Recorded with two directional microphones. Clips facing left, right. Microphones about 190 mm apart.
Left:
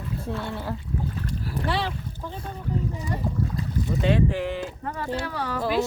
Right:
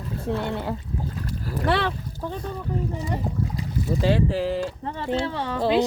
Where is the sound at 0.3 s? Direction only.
20° right (ahead or behind).